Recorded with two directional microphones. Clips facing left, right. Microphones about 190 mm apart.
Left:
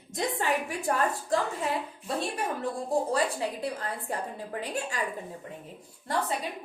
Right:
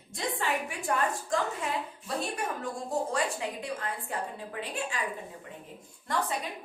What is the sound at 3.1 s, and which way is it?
A woman's voice, 35° left (ahead or behind).